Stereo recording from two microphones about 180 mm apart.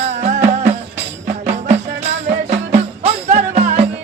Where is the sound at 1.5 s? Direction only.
35° right (ahead or behind).